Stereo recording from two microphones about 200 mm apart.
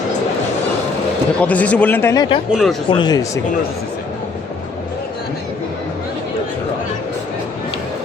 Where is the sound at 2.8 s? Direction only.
20° left (ahead or behind).